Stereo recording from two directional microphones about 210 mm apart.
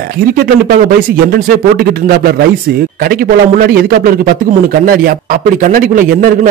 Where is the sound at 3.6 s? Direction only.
45° right (ahead or behind).